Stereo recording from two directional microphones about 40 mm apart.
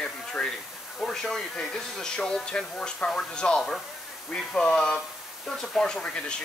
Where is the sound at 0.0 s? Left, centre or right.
Left.